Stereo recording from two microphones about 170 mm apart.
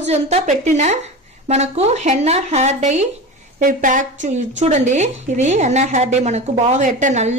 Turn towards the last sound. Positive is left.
turn(degrees=-45)  # may be behind; listen again after turning